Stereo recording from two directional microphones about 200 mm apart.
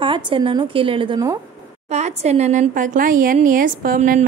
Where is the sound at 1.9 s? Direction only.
35° right (ahead or behind).